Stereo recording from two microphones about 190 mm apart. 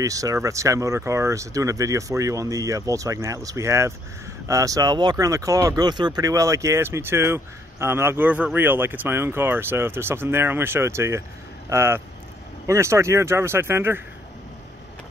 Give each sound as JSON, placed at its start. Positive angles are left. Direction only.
{"t": 0.0, "sound": "speech", "side_deg": -15}